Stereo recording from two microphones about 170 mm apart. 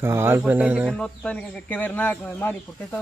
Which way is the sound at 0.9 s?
5° left (ahead or behind).